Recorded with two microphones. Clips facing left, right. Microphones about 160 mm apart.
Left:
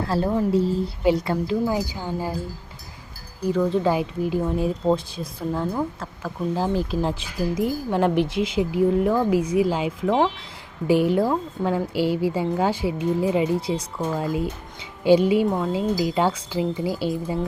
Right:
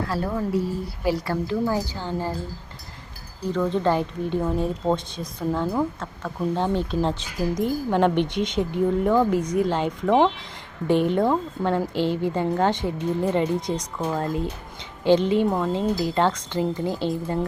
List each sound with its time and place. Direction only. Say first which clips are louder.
0.1 s speech: left 7 dB; 25° left (ahead or behind)
3.5 s a woman's voice: left 1 dB; 10° left (ahead or behind)